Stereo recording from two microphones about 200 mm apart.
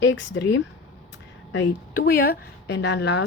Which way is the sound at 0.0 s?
65° left (ahead or behind).